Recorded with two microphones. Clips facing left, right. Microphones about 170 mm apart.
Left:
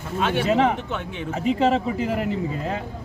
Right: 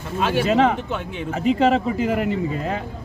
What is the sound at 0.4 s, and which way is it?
Speech, 80° right.